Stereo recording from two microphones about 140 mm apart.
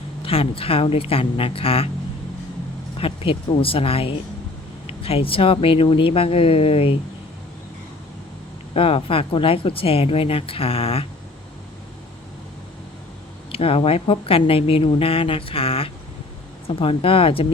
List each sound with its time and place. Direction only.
0.2 s a woman's voice: 40° left (ahead or behind)
3.0 s speech: 40° left (ahead or behind)
8.7 s speech: 40° left (ahead or behind)
13.5 s speech: 45° left (ahead or behind)